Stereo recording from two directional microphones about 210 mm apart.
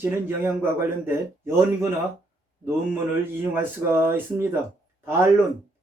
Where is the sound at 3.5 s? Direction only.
10° right (ahead or behind).